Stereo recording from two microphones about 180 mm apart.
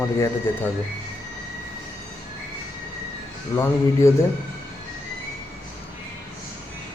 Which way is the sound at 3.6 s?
15° left (ahead or behind).